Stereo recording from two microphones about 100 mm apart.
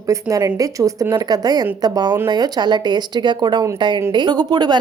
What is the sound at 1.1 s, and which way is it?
A woman's voice, 45° right (ahead or behind).